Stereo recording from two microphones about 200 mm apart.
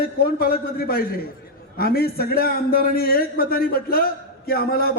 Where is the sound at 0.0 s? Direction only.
50° left (ahead or behind).